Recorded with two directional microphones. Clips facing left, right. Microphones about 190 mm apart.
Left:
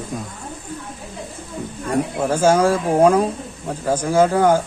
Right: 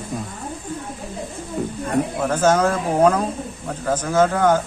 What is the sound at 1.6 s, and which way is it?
Snake, 65° right (ahead or behind).